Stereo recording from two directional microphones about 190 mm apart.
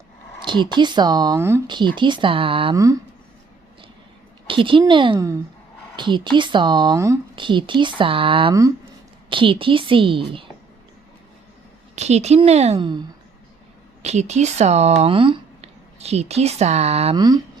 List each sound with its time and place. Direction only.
0.4 s speech: 25° right (ahead or behind)
2.7 s speech: 15° right (ahead or behind)
4.4 s speech: 25° right (ahead or behind)
11.9 s a woman's voice: 35° right (ahead or behind)
14.0 s speech: 35° right (ahead or behind)
17.2 s speech: 20° right (ahead or behind)